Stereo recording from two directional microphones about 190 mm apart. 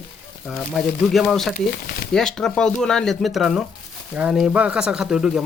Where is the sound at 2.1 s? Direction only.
5° left (ahead or behind).